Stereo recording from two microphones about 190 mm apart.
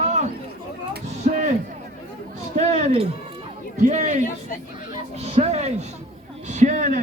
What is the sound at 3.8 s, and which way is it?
A man's voice, 40° right (ahead or behind).